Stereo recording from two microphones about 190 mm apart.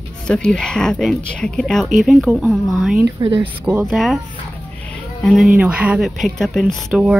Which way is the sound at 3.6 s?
5° right (ahead or behind).